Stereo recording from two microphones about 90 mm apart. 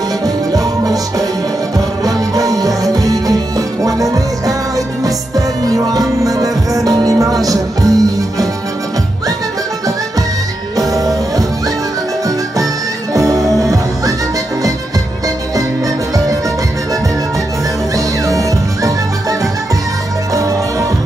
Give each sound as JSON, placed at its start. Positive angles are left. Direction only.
{"t": 0.2, "sound": "music", "side_deg": -45}
{"t": 10.8, "sound": "music", "side_deg": -40}
{"t": 13.1, "sound": "music", "side_deg": -40}
{"t": 17.9, "sound": "music", "side_deg": -40}